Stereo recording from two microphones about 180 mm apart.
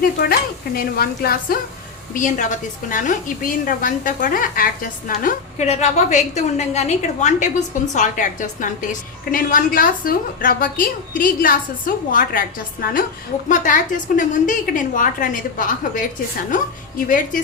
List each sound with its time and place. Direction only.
0.0 s a woman's voice: 55° left (ahead or behind)
2.1 s a woman's voice: 45° left (ahead or behind)
14.2 s a woman's voice: 45° left (ahead or behind)
17.1 s a woman's voice: 45° left (ahead or behind)